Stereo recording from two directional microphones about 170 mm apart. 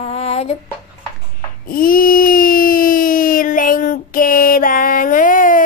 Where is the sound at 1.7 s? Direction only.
55° left (ahead or behind).